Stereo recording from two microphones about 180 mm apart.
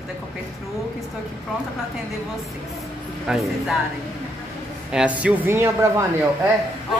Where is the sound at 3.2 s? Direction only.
5° right (ahead or behind).